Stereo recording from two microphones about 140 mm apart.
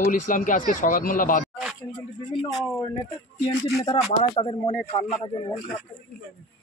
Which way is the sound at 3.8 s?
45° left (ahead or behind).